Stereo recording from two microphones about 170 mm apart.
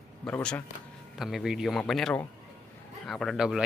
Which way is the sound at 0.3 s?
5° left (ahead or behind).